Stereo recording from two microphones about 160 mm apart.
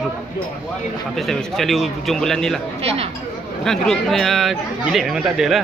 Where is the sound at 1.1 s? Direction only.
Centre (ahead or behind).